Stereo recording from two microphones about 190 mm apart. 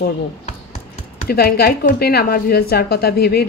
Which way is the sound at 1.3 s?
55° left (ahead or behind).